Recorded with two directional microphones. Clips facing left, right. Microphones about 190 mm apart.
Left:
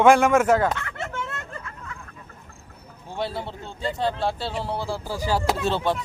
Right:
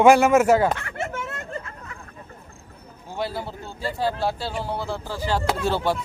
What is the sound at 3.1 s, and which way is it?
Speech, centre (ahead or behind).